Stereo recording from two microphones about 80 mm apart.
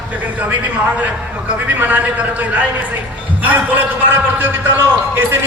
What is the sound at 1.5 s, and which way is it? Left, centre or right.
A man's voice, right.